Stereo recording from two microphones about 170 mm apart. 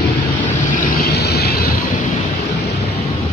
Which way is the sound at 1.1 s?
70° left (ahead or behind).